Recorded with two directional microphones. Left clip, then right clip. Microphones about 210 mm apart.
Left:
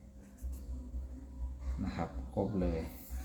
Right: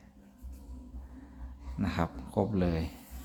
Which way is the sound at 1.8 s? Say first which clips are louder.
Right 7 dB; 30° right (ahead or behind).